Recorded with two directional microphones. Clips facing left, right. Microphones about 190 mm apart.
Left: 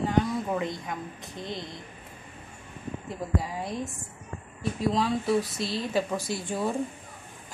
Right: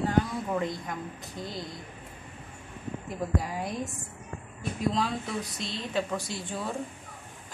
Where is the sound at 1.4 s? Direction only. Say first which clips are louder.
Left 1 dB; 25° left (ahead or behind).